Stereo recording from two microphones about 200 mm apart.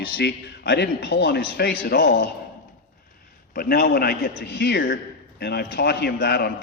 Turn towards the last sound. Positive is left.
turn(degrees=50)  # may be behind; listen again after turning